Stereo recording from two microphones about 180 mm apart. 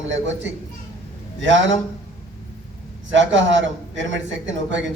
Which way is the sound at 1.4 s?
90° right.